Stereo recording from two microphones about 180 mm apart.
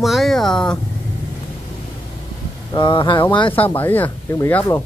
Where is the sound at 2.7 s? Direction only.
25° left (ahead or behind).